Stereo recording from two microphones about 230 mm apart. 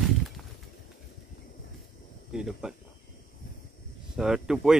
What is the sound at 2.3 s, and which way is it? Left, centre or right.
Speech, centre.